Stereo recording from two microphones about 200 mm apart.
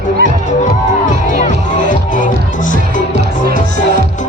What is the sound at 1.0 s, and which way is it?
Music, 40° left (ahead or behind).